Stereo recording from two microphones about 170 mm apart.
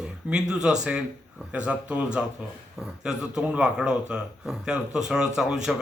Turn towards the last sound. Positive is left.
turn(degrees=-5)  # may be behind; listen again after turning